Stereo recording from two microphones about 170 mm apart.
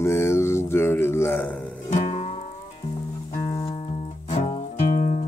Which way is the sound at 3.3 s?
20° left (ahead or behind).